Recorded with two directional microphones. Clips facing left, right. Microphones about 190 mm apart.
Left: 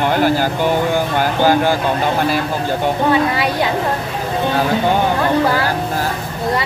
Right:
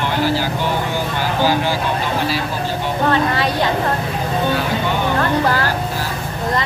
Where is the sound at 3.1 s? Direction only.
10° left (ahead or behind).